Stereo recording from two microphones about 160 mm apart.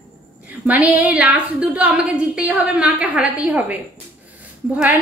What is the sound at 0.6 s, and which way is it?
Speech, 10° right (ahead or behind).